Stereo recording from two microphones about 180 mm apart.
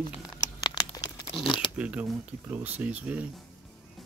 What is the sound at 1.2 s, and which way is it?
Speech, 25° left (ahead or behind).